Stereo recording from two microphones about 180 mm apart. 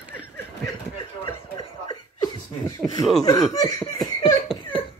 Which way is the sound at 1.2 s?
20° left (ahead or behind).